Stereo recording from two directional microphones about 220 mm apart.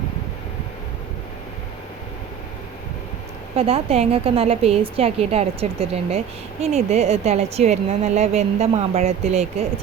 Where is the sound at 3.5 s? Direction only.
25° right (ahead or behind).